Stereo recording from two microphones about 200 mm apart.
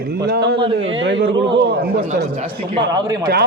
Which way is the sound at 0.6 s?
25° right (ahead or behind).